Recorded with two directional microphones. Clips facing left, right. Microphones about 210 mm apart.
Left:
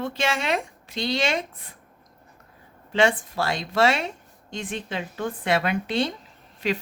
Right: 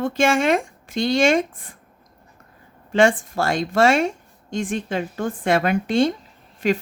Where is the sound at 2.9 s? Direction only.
45° right (ahead or behind).